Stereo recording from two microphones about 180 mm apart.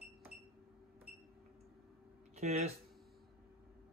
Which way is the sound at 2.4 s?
40° right (ahead or behind).